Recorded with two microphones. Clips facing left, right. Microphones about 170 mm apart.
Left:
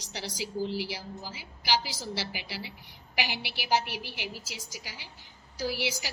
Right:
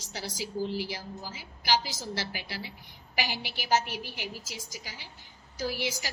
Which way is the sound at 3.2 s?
45° right (ahead or behind).